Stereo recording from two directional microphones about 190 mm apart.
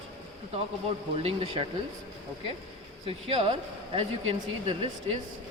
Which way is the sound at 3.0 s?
30° right (ahead or behind).